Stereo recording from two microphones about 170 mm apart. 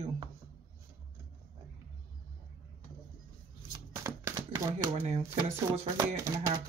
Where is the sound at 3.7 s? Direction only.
15° right (ahead or behind).